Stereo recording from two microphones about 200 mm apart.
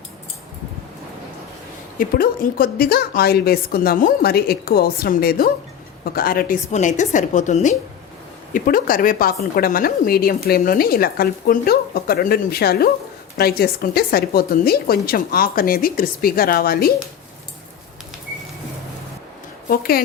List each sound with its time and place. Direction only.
2.0 s a woman's voice: 45° left (ahead or behind)
19.6 s speech: 50° left (ahead or behind)